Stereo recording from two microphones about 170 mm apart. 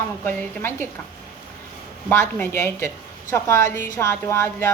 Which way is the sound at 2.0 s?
10° left (ahead or behind).